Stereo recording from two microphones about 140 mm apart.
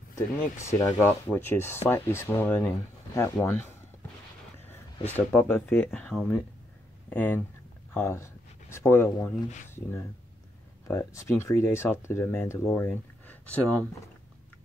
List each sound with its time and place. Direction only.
0.1 s speech: 20° left (ahead or behind)
5.0 s speech: 15° left (ahead or behind)